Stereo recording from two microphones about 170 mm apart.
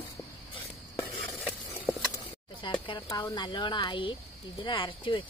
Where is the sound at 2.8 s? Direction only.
25° left (ahead or behind).